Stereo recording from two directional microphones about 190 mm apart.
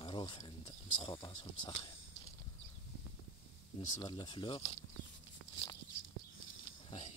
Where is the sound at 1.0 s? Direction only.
20° left (ahead or behind).